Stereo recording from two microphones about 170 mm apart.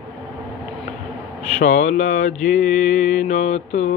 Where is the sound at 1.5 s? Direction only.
45° left (ahead or behind).